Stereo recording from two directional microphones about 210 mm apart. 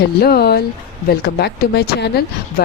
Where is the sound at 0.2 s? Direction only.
45° left (ahead or behind).